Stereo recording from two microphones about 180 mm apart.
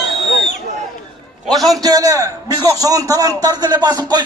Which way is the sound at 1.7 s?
20° right (ahead or behind).